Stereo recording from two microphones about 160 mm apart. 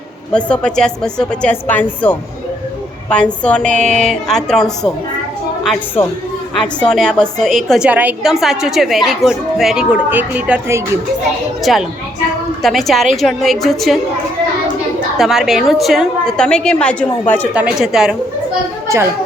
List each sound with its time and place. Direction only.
0.3 s a woman's voice: 5° left (ahead or behind)
6.6 s a woman's voice: 5° left (ahead or behind)
7.9 s a woman's voice: 10° right (ahead or behind)
11.6 s a woman's voice: centre (ahead or behind)
15.2 s a woman's voice: centre (ahead or behind)
17.5 s a woman's voice: 5° right (ahead or behind)